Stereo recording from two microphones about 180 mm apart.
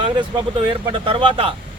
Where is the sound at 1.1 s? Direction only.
30° right (ahead or behind).